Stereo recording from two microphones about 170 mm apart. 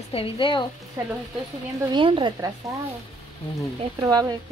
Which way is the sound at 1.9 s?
30° right (ahead or behind).